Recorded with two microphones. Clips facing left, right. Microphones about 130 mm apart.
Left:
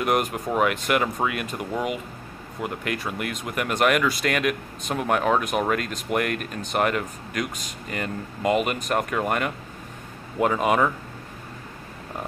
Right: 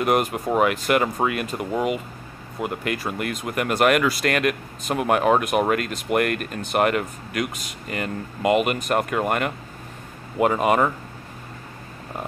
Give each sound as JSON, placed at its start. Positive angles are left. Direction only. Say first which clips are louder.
{"t": 0.0, "sound": "speech", "louder": "right 2 dB", "side_deg": 0}